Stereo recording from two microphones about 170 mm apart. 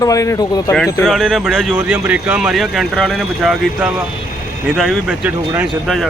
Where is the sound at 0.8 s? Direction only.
Centre (ahead or behind).